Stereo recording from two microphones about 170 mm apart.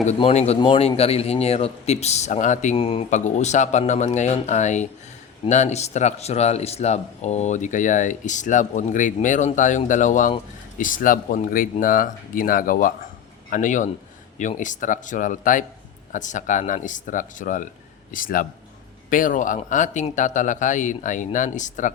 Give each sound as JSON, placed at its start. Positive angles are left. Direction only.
{"t": 0.0, "sound": "a man's voice", "side_deg": 40}
{"t": 2.7, "sound": "a man's voice", "side_deg": 30}
{"t": 3.1, "sound": "speech", "side_deg": 45}